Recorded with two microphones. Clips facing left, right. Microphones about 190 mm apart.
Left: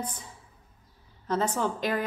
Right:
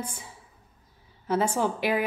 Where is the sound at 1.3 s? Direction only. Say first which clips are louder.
Right 2 dB; 10° right (ahead or behind).